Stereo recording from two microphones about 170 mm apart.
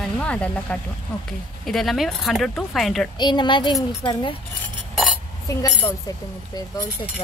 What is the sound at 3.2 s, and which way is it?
Speech, 25° left (ahead or behind).